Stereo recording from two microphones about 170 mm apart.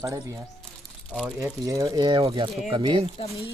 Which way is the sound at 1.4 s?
20° right (ahead or behind).